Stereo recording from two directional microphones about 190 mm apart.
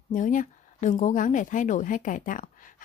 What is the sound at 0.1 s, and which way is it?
Speech, 45° left (ahead or behind).